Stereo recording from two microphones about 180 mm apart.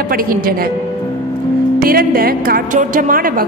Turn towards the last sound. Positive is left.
turn(degrees=-50)  # may be behind; listen again after turning